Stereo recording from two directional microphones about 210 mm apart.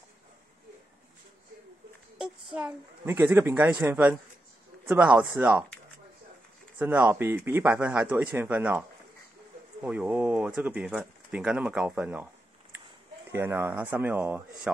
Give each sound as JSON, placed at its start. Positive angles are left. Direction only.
{"t": 2.1, "sound": "speech", "side_deg": -5}
{"t": 6.8, "sound": "speech", "side_deg": -10}
{"t": 13.3, "sound": "speech", "side_deg": -10}